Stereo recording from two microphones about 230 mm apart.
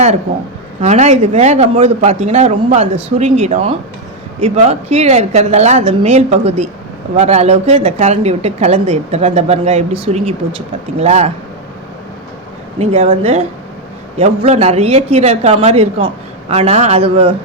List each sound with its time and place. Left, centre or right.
0.8 s speech: right
12.8 s speech: right